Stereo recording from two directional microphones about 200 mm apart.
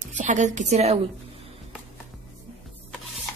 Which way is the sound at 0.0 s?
35° right (ahead or behind).